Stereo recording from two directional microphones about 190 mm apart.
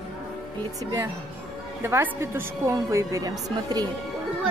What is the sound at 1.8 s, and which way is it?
A woman's voice, 10° right (ahead or behind).